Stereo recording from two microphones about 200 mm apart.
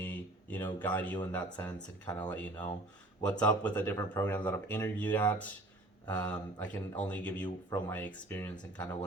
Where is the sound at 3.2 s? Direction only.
5° left (ahead or behind).